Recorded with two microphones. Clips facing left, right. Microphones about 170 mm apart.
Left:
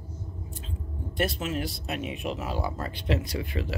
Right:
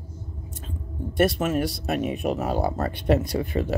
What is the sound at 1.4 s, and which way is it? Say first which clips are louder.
Speech: right 7 dB; 50° right (ahead or behind).